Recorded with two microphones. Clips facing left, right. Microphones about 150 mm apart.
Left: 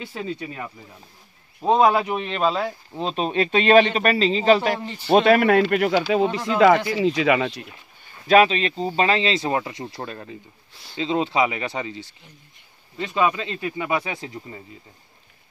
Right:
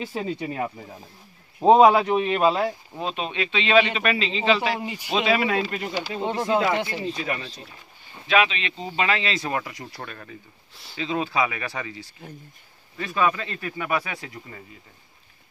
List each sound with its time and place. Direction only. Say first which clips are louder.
0.3 s speech: right 3 dB; 20° right (ahead or behind)
1.8 s speech: right 2 dB; 5° right (ahead or behind)
3.0 s a man's voice: left 6 dB; 35° left (ahead or behind)
4.7 s speech: even; 15° right (ahead or behind)
5.1 s speech: left 7 dB; 55° left (ahead or behind); by 6.2 s 85° left
6.2 s speech: even; 20° right (ahead or behind)
7.0 s speech: left 10 dB; 90° left
8.3 s speech: left 6 dB; 40° left (ahead or behind)
10.7 s speech: even; centre (ahead or behind)
11.0 s speech: left 4 dB; 25° left (ahead or behind)